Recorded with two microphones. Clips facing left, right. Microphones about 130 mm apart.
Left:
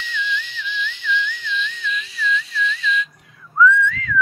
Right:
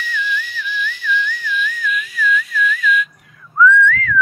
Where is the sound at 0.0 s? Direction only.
20° left (ahead or behind).